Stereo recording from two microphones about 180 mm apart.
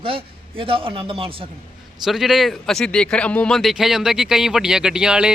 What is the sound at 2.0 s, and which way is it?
Speech, centre (ahead or behind).